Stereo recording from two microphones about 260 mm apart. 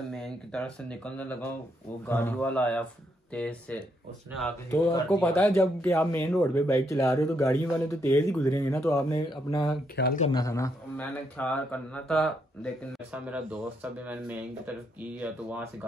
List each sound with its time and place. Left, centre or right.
0.1 s speech: centre
9.9 s speech: left
10.2 s speech: centre